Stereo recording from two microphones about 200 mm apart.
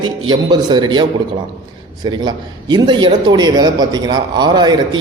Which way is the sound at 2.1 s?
20° right (ahead or behind).